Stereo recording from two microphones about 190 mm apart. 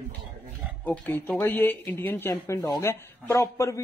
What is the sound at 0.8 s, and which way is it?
Speech, 10° left (ahead or behind).